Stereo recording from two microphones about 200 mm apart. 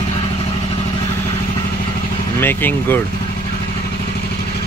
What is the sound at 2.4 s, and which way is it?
Speech, 10° left (ahead or behind).